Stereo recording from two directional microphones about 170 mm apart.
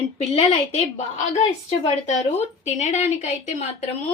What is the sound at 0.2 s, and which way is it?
A woman's voice, 40° left (ahead or behind).